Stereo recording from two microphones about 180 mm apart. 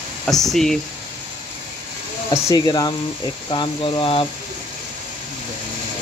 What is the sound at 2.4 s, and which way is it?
Speech, 20° left (ahead or behind).